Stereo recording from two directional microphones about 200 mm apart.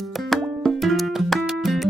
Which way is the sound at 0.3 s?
Centre (ahead or behind).